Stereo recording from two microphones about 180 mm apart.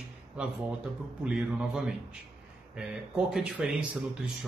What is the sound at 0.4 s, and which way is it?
Speech, 5° right (ahead or behind).